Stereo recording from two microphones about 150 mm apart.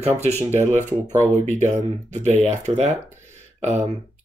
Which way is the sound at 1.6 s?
55° right (ahead or behind).